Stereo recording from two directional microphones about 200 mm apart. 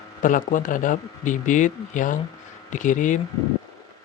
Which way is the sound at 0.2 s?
40° left (ahead or behind).